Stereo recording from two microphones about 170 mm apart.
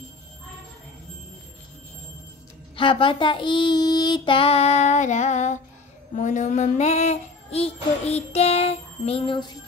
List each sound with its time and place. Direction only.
2.7 s music: 30° left (ahead or behind)